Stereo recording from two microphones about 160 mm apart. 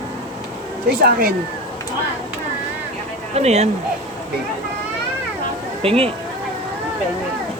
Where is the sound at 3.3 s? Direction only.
40° right (ahead or behind).